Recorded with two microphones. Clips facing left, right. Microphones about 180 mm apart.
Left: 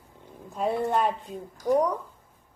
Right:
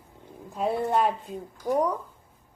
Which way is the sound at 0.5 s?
Centre (ahead or behind).